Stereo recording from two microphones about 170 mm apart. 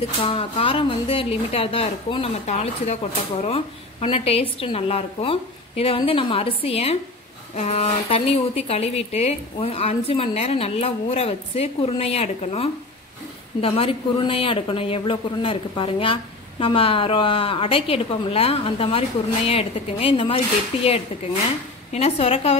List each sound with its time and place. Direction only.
0.2 s speech: 30° left (ahead or behind)